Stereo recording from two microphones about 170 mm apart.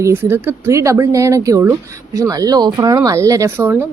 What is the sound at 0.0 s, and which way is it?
Speech, 15° right (ahead or behind).